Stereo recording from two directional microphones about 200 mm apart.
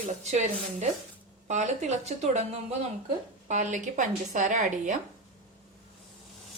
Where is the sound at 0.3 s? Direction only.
35° right (ahead or behind).